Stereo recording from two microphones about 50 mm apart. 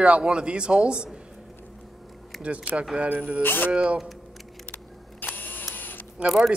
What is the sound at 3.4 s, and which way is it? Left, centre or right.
Speech, left.